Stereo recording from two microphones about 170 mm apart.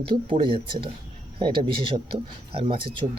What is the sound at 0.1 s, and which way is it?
Speech, 30° right (ahead or behind).